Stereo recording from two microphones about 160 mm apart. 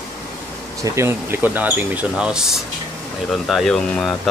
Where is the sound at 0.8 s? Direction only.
15° right (ahead or behind).